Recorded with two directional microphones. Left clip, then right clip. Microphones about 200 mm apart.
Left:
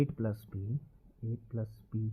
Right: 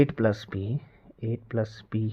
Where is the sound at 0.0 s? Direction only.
20° right (ahead or behind).